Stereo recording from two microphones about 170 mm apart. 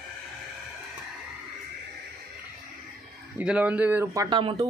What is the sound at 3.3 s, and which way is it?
Speech, 10° right (ahead or behind).